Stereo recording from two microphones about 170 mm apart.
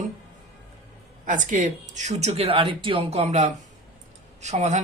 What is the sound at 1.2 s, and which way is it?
Speech, 50° right (ahead or behind).